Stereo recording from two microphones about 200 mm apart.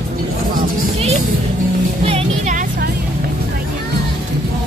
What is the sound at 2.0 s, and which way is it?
Music, 30° right (ahead or behind).